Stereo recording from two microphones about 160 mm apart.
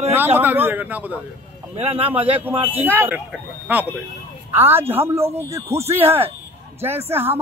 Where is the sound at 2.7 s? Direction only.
10° right (ahead or behind).